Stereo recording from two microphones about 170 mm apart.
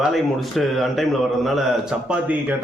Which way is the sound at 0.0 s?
Centre (ahead or behind).